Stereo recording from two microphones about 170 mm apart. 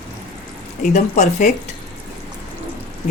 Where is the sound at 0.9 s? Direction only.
45° left (ahead or behind).